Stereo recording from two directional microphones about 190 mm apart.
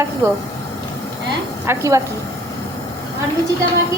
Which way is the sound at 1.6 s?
15° right (ahead or behind).